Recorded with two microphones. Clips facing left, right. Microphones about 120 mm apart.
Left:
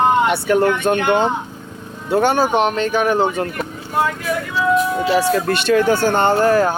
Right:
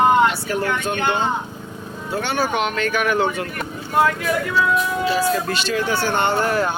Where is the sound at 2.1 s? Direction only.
50° left (ahead or behind).